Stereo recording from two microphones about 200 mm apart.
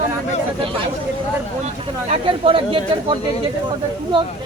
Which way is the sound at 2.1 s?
25° right (ahead or behind).